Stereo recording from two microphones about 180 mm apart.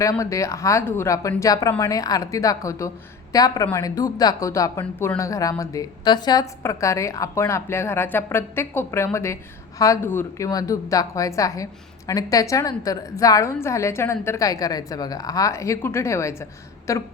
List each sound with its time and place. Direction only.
0.0 s a woman's voice: 20° left (ahead or behind)